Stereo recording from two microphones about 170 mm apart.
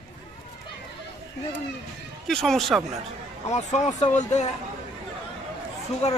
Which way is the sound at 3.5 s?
40° left (ahead or behind).